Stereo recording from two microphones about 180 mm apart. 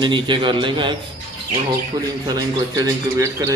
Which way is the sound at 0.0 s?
25° right (ahead or behind).